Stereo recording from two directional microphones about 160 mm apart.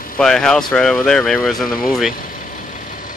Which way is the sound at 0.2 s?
5° left (ahead or behind).